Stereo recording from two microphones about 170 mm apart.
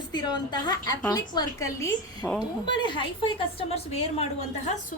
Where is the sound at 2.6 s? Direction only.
25° left (ahead or behind).